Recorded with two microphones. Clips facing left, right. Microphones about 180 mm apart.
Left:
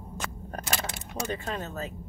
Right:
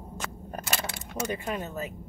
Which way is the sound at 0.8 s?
20° left (ahead or behind).